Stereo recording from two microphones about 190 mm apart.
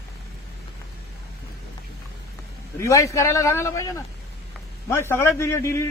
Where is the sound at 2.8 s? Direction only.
15° left (ahead or behind).